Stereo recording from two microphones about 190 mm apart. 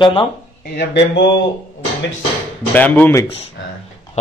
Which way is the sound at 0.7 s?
70° left (ahead or behind).